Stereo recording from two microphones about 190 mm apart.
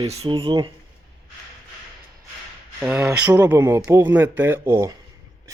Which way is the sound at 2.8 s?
5° right (ahead or behind).